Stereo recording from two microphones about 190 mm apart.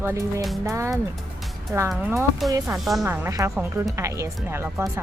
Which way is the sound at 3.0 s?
10° right (ahead or behind).